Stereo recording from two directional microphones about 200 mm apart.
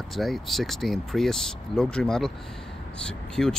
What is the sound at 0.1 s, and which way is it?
Speech, centre (ahead or behind).